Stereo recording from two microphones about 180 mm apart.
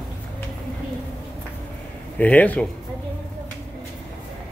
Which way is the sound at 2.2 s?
10° left (ahead or behind).